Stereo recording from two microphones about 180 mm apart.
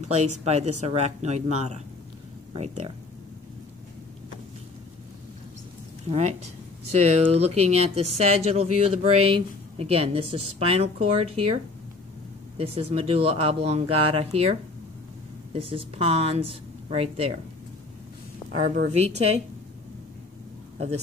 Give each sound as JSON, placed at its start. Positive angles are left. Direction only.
{"t": 0.0, "sound": "speech", "side_deg": -40}
{"t": 6.9, "sound": "speech", "side_deg": -40}
{"t": 12.5, "sound": "speech", "side_deg": -30}
{"t": 18.6, "sound": "speech", "side_deg": -40}